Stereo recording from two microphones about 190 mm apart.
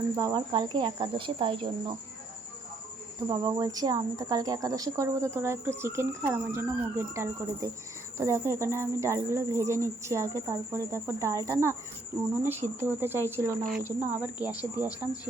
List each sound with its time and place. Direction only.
0.2 s a woman's voice: 20° right (ahead or behind)
3.2 s a woman's voice: 20° right (ahead or behind)